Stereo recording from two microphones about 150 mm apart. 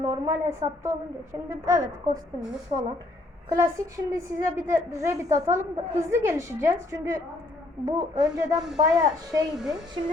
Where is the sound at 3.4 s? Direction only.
20° right (ahead or behind).